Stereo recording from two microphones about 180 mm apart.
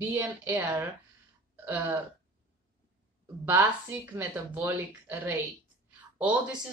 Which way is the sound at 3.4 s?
10° right (ahead or behind).